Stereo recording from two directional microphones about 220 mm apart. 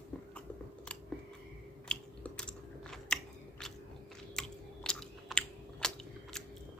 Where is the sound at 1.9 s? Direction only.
5° left (ahead or behind).